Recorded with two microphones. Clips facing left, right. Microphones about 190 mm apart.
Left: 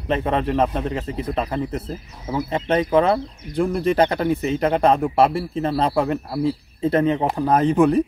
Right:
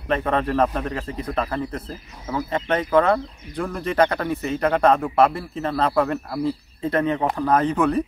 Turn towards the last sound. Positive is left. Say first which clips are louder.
# left 3 dB
turn(degrees=25)  # may be behind; listen again after turning